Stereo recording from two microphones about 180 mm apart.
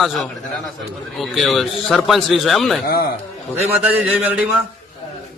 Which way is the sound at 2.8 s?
60° left (ahead or behind).